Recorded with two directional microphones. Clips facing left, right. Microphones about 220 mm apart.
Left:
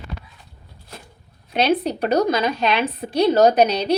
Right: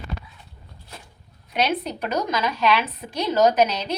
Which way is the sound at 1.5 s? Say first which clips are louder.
Left 5 dB; 30° left (ahead or behind).